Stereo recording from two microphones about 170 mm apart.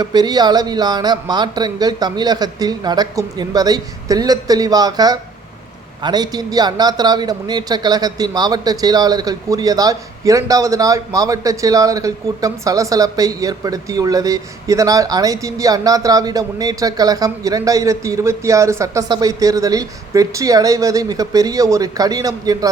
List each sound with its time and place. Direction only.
0.0 s a man's voice: 25° right (ahead or behind)